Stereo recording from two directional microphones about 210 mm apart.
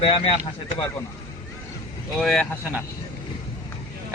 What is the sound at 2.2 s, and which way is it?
Speech, centre (ahead or behind).